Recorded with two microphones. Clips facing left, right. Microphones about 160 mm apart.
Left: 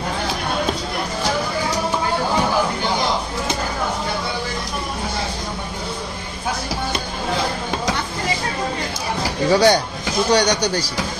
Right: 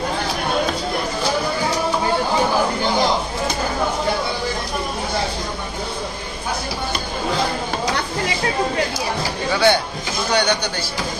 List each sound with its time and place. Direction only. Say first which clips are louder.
9.5 s speech: left 3 dB; 40° left (ahead or behind)